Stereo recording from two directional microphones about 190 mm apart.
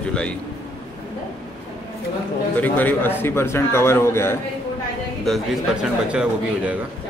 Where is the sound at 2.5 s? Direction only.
10° left (ahead or behind).